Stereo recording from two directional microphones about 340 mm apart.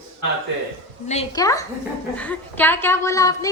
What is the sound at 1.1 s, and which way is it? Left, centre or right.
A woman's voice, centre.